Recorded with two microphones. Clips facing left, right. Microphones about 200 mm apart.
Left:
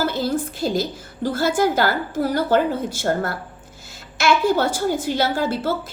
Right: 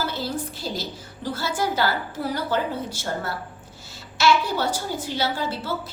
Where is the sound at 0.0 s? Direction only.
50° left (ahead or behind).